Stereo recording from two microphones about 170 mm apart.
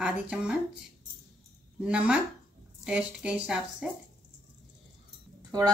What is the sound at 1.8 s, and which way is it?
A woman's voice, 5° right (ahead or behind).